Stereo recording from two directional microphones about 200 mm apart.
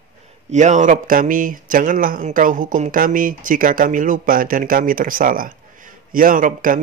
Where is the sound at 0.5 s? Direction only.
35° right (ahead or behind).